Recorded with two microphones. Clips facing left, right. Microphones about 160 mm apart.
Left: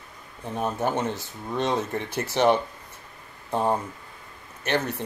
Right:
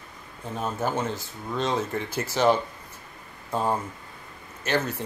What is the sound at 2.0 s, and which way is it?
Speech, 65° left (ahead or behind).